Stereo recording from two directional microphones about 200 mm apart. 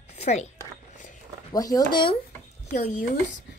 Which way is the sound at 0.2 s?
35° left (ahead or behind).